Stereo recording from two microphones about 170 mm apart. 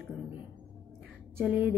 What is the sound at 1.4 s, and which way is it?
Speech, centre (ahead or behind).